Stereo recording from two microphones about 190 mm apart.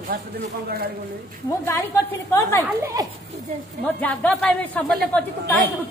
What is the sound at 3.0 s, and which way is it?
Speech, 20° right (ahead or behind).